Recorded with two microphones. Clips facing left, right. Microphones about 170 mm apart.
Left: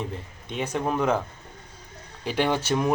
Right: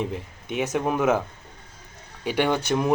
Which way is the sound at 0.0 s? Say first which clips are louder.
Right 4 dB; 15° right (ahead or behind).